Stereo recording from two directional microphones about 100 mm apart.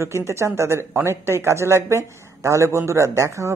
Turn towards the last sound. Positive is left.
turn(degrees=-30)  # may be behind; listen again after turning